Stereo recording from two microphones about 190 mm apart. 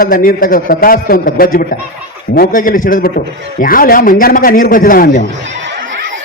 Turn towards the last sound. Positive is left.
turn(degrees=45)  # may be behind; listen again after turning